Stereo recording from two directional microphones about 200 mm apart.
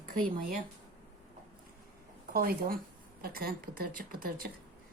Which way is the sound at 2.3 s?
50° right (ahead or behind).